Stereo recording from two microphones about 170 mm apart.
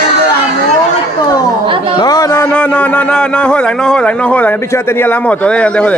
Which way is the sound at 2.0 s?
20° left (ahead or behind).